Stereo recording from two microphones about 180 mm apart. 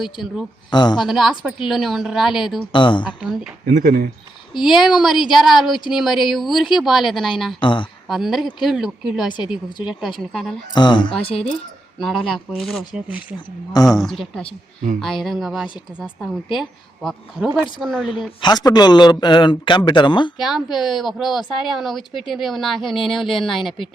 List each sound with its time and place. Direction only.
0.0 s a woman's voice: centre (ahead or behind)
0.7 s a man's voice: 25° left (ahead or behind)
0.9 s a woman's voice: centre (ahead or behind)
2.7 s a man's voice: 25° left (ahead or behind)
3.7 s speech: 55° right (ahead or behind)
4.5 s a woman's voice: centre (ahead or behind)
7.6 s a man's voice: 25° left (ahead or behind)
8.0 s a woman's voice: centre (ahead or behind)
10.8 s a man's voice: 25° left (ahead or behind)
11.9 s a woman's voice: centre (ahead or behind)
18.4 s a man's voice: 25° left (ahead or behind)
20.4 s a woman's voice: centre (ahead or behind)